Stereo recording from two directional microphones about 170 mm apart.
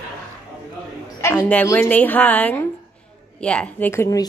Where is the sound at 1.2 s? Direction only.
10° left (ahead or behind).